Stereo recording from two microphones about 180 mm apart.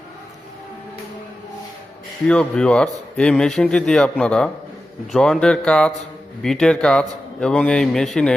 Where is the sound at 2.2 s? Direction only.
5° left (ahead or behind).